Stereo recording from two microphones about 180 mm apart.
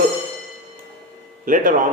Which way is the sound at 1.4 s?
50° right (ahead or behind).